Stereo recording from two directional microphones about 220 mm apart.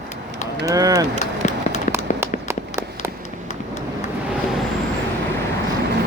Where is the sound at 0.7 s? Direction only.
15° right (ahead or behind).